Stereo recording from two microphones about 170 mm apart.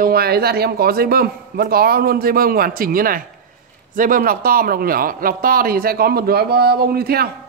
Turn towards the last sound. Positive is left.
turn(degrees=-65)  # may be behind; listen again after turning